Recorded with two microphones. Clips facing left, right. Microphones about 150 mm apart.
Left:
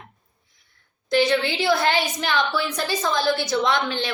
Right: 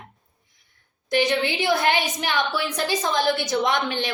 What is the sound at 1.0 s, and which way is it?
A woman's voice, 15° right (ahead or behind).